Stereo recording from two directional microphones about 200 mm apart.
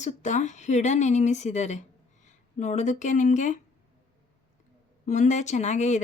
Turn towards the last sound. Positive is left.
turn(degrees=35)  # may be behind; listen again after turning